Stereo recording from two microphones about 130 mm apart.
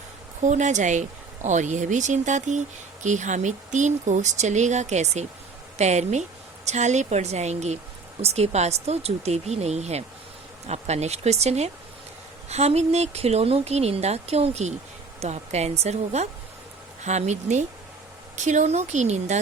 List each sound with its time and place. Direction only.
0.4 s speech: 70° right (ahead or behind)